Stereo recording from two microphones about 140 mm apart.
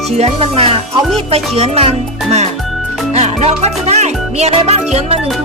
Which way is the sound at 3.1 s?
50° right (ahead or behind).